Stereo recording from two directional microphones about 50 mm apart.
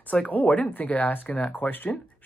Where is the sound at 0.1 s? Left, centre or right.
Left.